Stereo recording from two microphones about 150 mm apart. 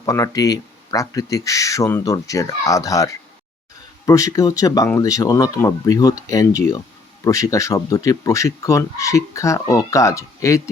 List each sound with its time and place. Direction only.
0.0 s speech: 20° left (ahead or behind)